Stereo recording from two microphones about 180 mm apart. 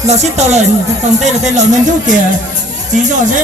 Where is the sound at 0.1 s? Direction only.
40° right (ahead or behind).